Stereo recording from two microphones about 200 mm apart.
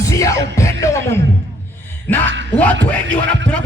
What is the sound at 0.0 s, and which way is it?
Music, 15° left (ahead or behind).